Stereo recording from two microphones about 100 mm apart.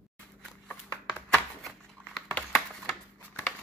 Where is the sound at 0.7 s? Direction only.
10° left (ahead or behind).